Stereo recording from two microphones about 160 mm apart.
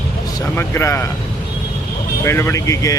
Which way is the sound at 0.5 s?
15° left (ahead or behind).